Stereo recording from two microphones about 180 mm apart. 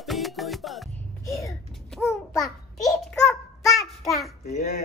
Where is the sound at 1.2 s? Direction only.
15° left (ahead or behind).